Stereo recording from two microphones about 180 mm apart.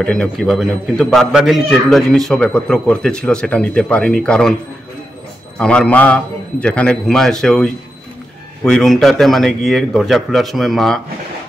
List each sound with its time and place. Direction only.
0.0 s a man's voice: 5° left (ahead or behind)
5.6 s a man's voice: 5° left (ahead or behind)